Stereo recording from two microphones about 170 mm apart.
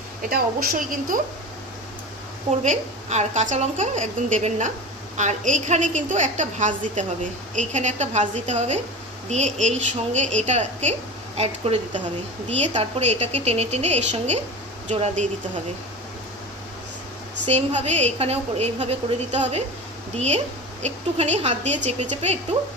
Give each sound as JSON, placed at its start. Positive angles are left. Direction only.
{"t": 0.3, "sound": "a woman's voice", "side_deg": -55}
{"t": 2.6, "sound": "a woman's voice", "side_deg": -40}
{"t": 17.5, "sound": "a woman's voice", "side_deg": -40}
{"t": 20.8, "sound": "a woman's voice", "side_deg": -40}